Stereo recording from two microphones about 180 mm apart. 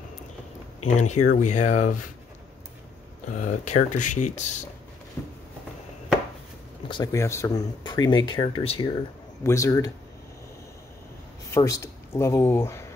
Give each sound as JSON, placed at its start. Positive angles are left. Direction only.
{"t": 0.8, "sound": "speech", "side_deg": 40}
{"t": 3.3, "sound": "speech", "side_deg": 40}
{"t": 5.2, "sound": "a sound", "side_deg": 10}
{"t": 6.9, "sound": "speech", "side_deg": 20}
{"t": 9.4, "sound": "speech", "side_deg": 15}
{"t": 11.5, "sound": "speech", "side_deg": 15}